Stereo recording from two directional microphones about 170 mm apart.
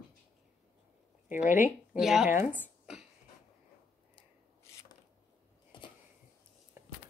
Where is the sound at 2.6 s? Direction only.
5° right (ahead or behind).